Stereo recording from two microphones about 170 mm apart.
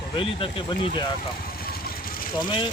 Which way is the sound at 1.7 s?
60° left (ahead or behind).